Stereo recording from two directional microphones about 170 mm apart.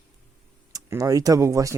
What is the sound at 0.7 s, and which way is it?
Speech, 20° right (ahead or behind).